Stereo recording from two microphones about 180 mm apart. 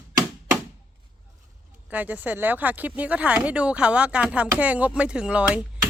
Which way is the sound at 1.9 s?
10° right (ahead or behind).